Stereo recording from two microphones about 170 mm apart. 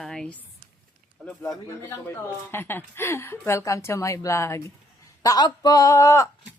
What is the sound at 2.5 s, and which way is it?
A woman's voice, 10° left (ahead or behind).